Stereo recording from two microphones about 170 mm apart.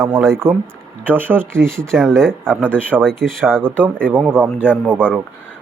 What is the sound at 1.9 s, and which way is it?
Speech, 5° left (ahead or behind).